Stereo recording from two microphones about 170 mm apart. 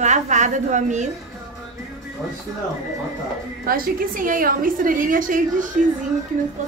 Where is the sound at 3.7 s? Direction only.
55° right (ahead or behind).